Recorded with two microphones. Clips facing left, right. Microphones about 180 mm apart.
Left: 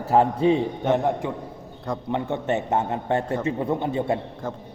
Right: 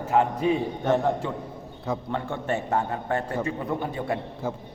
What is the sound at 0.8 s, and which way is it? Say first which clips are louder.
A man's voice: left 1 dB; 15° left (ahead or behind).